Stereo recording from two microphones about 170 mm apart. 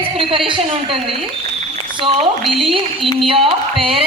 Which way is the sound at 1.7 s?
35° right (ahead or behind).